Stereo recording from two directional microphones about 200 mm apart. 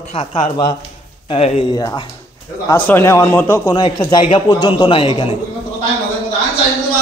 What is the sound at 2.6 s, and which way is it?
A man's voice, 10° left (ahead or behind).